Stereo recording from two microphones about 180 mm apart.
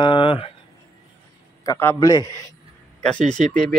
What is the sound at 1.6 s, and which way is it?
Speech, 15° left (ahead or behind).